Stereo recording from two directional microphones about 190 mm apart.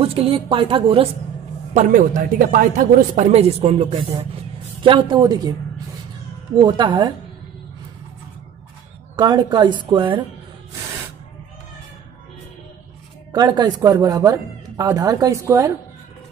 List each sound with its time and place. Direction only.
0.0 s speech: 30° right (ahead or behind)
1.7 s speech: 40° right (ahead or behind); by 5.5 s 20° right (ahead or behind)
6.5 s speech: 25° right (ahead or behind)
9.1 s speech: 25° right (ahead or behind)
13.3 s speech: 20° right (ahead or behind)